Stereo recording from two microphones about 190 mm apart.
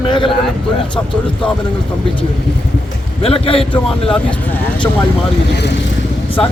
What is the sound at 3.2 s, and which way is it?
Speech, 30° left (ahead or behind).